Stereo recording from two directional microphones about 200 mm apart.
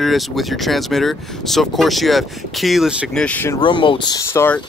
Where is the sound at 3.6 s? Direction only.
25° left (ahead or behind).